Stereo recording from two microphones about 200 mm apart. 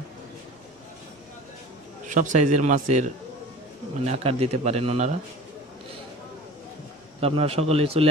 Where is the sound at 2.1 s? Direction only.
40° right (ahead or behind).